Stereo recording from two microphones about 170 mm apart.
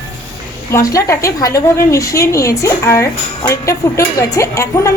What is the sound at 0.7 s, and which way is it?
A woman's voice, 20° left (ahead or behind).